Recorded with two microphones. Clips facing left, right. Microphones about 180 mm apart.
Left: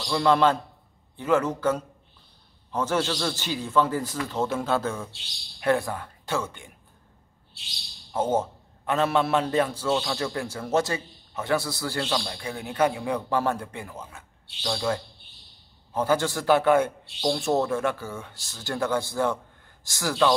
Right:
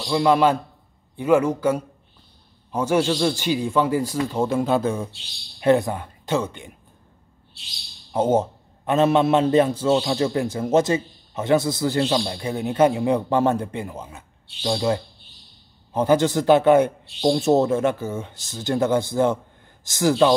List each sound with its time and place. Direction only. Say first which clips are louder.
0.0 s a man's voice: right 3 dB; 10° right (ahead or behind)
8.1 s a man's voice: right 5 dB; 20° right (ahead or behind)